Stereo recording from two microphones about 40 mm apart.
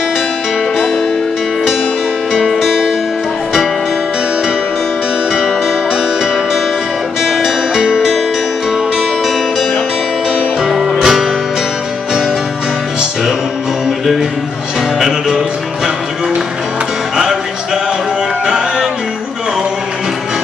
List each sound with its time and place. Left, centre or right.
2.3 s music: centre
7.2 s music: centre
10.7 s music: centre
15.0 s music: centre